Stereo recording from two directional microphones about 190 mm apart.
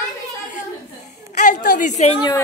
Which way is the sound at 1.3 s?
45° left (ahead or behind).